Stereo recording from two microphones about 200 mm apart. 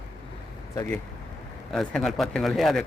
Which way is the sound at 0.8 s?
5° left (ahead or behind).